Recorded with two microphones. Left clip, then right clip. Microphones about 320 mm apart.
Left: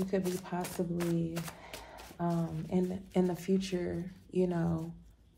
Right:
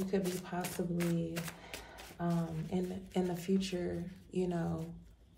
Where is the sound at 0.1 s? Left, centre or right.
Centre.